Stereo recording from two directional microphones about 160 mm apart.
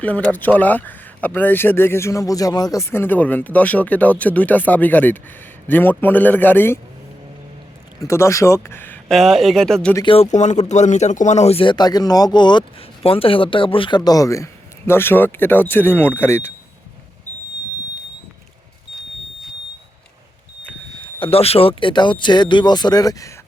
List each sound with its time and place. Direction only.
0.0 s speech: 10° left (ahead or behind)
8.0 s speech: 20° left (ahead or behind)
9.1 s speech: centre (ahead or behind)
9.9 s speech: 25° left (ahead or behind)
10.2 s speech: 45° left (ahead or behind); by 16.5 s 15° left (ahead or behind)
21.0 s speech: 35° left (ahead or behind)